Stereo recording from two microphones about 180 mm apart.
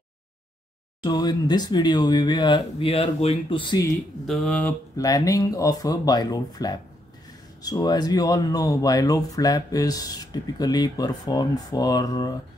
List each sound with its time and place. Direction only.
1.0 s speech: 25° left (ahead or behind)
4.3 s speech: 5° left (ahead or behind)
4.9 s speech: 20° left (ahead or behind)